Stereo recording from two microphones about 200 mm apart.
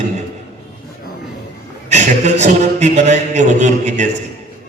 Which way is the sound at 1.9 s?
35° right (ahead or behind).